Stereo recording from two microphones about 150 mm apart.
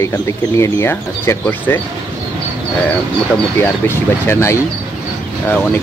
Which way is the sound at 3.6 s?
15° left (ahead or behind).